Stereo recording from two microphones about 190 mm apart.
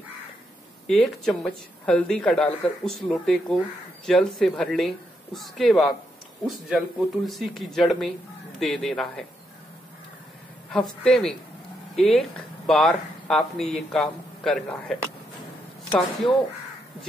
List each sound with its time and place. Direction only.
0.8 s speech: centre (ahead or behind)
10.7 s speech: centre (ahead or behind)